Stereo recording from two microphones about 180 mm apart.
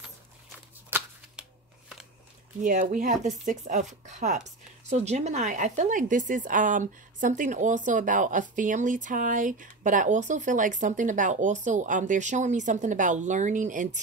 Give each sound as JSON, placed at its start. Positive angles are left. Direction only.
{"t": 0.8, "sound": "shuffling cards", "side_deg": -10}
{"t": 2.6, "sound": "speech", "side_deg": -45}